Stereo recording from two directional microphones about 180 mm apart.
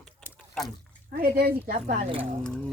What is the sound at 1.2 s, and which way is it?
Speech, 55° right (ahead or behind).